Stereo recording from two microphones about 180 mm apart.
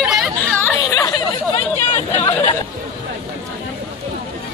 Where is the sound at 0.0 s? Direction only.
Centre (ahead or behind).